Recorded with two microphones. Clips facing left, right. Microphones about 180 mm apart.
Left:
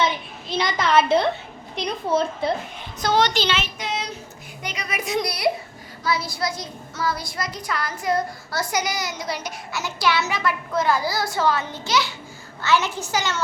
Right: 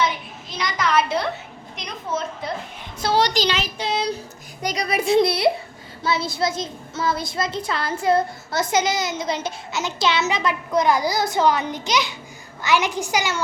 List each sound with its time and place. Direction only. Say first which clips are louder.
0.0 s a sound: even; 30° left (ahead or behind)
1.7 s a child's voice: left 6 dB; 30° left (ahead or behind)
3.0 s a child's voice: right 1 dB; 35° right (ahead or behind); by 13.4 s 15° right (ahead or behind)